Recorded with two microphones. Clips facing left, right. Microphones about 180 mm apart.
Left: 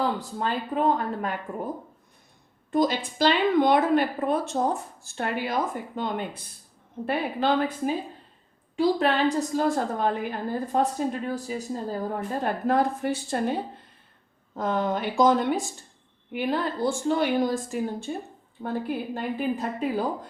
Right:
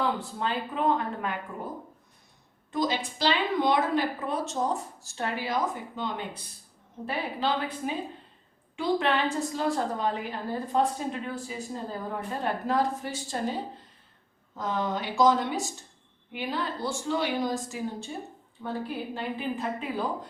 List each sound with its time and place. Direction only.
0.0 s speech: 40° left (ahead or behind)
2.7 s a woman's voice: 50° left (ahead or behind)
8.7 s a woman's voice: 35° left (ahead or behind)
9.6 s a woman's voice: 50° left (ahead or behind)